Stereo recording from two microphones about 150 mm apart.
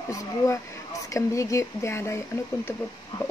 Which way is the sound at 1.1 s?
20° left (ahead or behind).